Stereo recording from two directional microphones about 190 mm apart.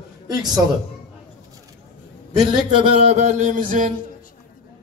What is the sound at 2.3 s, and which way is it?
Speech, 25° right (ahead or behind).